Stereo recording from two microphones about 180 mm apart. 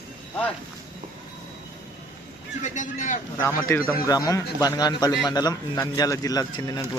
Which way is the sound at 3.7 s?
15° left (ahead or behind).